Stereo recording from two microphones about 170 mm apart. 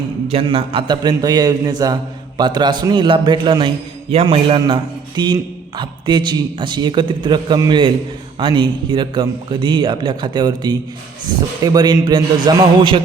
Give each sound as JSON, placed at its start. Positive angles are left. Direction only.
{"t": 0.3, "sound": "a man's voice", "side_deg": -35}